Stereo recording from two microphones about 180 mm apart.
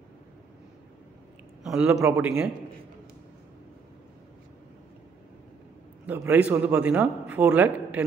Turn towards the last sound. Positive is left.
turn(degrees=-10)  # may be behind; listen again after turning